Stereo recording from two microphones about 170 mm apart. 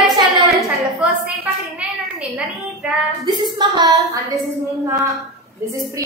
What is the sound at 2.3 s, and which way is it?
Speech, 5° right (ahead or behind).